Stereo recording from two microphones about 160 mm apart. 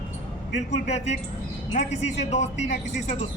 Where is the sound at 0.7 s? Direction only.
45° left (ahead or behind).